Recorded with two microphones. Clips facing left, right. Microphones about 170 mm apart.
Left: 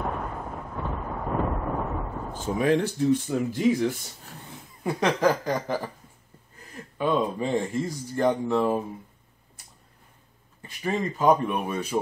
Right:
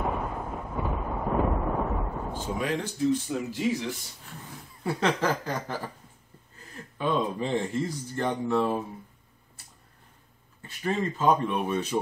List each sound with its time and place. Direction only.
0.0 s eruption: 5° right (ahead or behind)
2.6 s speech: 60° left (ahead or behind)
4.8 s speech: 15° left (ahead or behind)
10.8 s speech: 10° left (ahead or behind)